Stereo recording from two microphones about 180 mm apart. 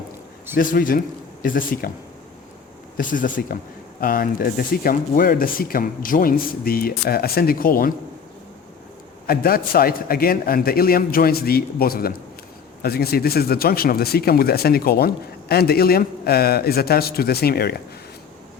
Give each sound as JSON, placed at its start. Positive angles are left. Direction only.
{"t": 0.5, "sound": "speech", "side_deg": 50}
{"t": 3.0, "sound": "speech", "side_deg": 50}
{"t": 9.2, "sound": "speech", "side_deg": 55}